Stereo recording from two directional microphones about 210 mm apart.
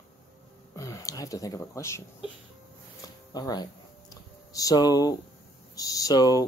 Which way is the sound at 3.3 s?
20° left (ahead or behind).